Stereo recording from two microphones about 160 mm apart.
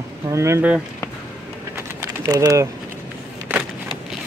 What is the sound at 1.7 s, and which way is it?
Typing, 20° right (ahead or behind).